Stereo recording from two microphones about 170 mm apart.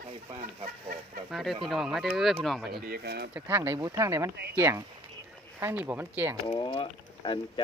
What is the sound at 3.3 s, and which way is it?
Speech, 10° right (ahead or behind).